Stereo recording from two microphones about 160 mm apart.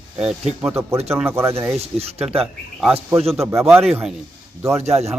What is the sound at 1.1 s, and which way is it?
Speech, 15° right (ahead or behind).